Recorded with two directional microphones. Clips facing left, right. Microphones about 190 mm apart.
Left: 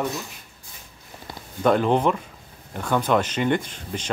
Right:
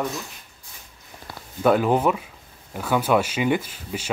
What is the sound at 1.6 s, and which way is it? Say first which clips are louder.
Speech: even; 5° right (ahead or behind).